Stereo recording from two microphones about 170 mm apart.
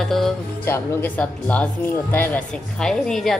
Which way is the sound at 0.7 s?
10° left (ahead or behind).